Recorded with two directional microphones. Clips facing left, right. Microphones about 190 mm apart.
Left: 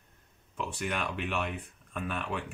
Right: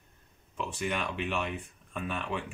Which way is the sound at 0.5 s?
Centre (ahead or behind).